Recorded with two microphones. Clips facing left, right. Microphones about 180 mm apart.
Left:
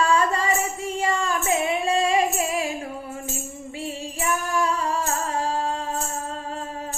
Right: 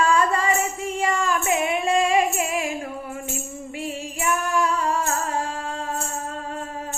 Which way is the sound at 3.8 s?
35° left (ahead or behind).